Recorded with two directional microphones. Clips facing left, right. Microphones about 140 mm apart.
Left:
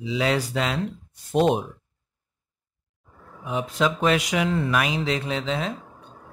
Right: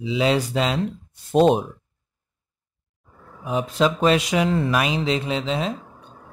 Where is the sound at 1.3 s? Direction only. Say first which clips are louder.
Right 4 dB; 30° right (ahead or behind).